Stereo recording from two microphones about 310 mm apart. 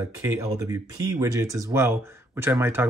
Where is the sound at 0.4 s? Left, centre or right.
Centre.